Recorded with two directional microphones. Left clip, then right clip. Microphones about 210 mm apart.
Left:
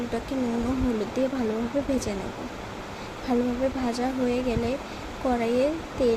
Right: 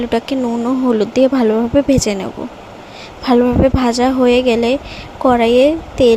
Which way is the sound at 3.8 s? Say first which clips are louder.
Right 14 dB; 40° right (ahead or behind).